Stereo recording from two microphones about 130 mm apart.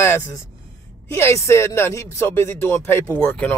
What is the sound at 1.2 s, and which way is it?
Speech, 20° left (ahead or behind).